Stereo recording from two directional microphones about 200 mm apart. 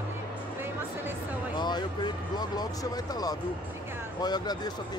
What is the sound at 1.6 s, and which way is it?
Speech, 20° left (ahead or behind).